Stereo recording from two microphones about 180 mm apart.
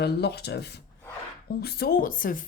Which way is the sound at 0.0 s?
65° left (ahead or behind).